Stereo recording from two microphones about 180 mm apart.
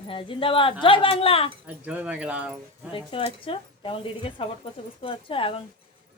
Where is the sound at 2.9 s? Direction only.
30° left (ahead or behind).